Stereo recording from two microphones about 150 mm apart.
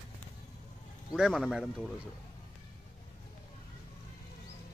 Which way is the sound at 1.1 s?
Centre (ahead or behind).